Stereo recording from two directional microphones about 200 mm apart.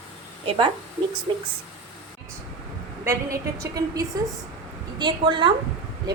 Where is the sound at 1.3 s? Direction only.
25° right (ahead or behind).